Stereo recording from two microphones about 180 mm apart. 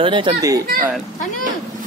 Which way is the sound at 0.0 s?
30° right (ahead or behind).